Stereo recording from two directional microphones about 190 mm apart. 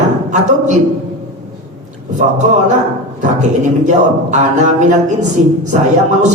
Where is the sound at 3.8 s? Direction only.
40° right (ahead or behind).